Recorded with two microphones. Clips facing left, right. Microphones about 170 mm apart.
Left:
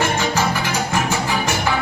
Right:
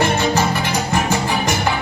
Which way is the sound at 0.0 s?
15° right (ahead or behind).